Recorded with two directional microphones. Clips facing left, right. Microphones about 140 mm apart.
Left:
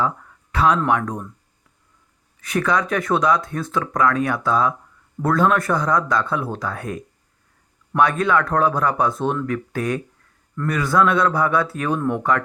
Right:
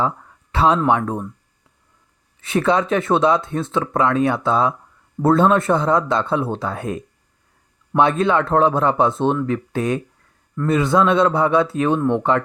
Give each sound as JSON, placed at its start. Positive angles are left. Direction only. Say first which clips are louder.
{"t": 0.5, "sound": "speech", "louder": "right 2 dB", "side_deg": -25}
{"t": 2.4, "sound": "speech", "louder": "right 3 dB", "side_deg": -25}